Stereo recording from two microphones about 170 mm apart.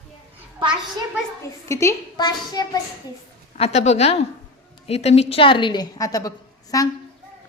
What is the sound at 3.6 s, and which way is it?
A woman's voice, 40° left (ahead or behind).